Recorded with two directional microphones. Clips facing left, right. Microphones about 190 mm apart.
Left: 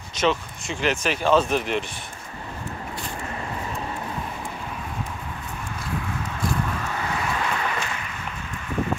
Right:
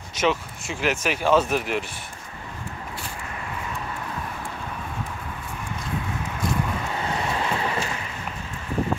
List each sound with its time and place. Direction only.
0.2 s speech: 5° right (ahead or behind)
6.8 s vehicle: 25° right (ahead or behind)